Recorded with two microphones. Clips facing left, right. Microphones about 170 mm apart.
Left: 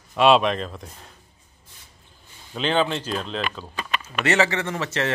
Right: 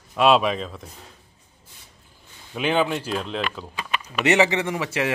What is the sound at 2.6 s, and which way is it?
Speech, 10° right (ahead or behind).